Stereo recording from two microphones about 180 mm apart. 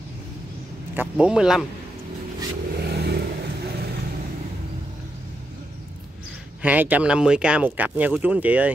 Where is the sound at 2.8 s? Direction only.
65° right (ahead or behind).